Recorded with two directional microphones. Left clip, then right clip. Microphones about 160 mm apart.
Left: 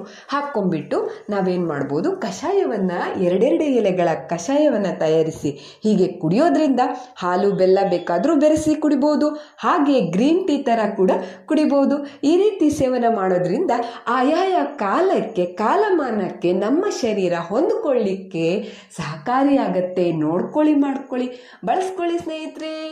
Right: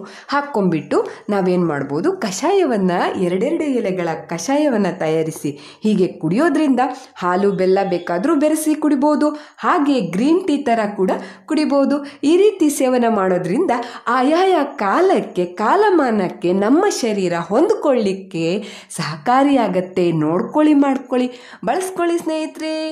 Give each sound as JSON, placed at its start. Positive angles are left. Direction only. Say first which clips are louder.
{"t": 0.6, "sound": "speech", "louder": "right 4 dB", "side_deg": -20}
{"t": 3.3, "sound": "a woman's voice", "louder": "left 2 dB", "side_deg": -5}
{"t": 18.3, "sound": "a woman's voice", "louder": "even", "side_deg": -10}